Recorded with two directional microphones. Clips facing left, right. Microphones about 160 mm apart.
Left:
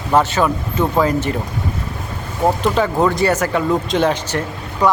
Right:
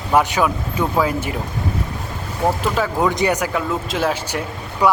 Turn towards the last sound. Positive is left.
turn(degrees=-10)  # may be behind; listen again after turning